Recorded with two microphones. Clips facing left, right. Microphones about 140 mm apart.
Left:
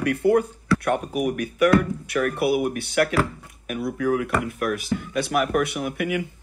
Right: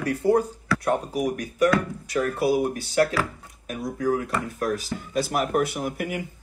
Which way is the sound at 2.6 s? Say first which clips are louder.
Even; 30° right (ahead or behind).